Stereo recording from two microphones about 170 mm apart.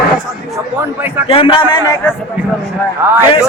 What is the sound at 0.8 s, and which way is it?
Speech, 10° right (ahead or behind).